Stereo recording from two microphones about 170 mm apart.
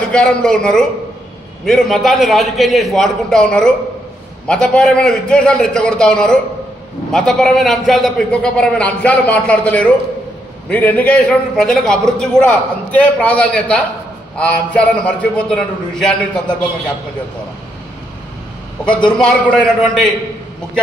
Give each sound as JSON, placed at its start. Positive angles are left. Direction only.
{"t": 0.1, "sound": "a man's voice", "side_deg": 5}
{"t": 19.0, "sound": "a man's voice", "side_deg": 5}